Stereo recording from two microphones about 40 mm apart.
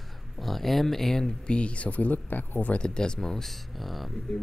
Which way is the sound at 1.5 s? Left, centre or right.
Left.